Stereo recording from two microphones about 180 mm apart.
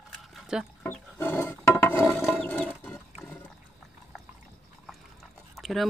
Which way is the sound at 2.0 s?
Centre (ahead or behind).